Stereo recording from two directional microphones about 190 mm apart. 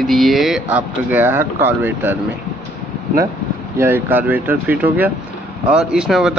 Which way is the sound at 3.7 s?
10° right (ahead or behind).